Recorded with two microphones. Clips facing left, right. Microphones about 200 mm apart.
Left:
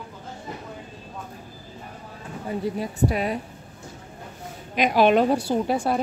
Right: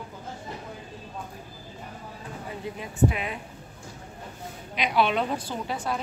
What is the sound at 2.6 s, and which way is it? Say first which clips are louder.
Speech: even; 40° left (ahead or behind).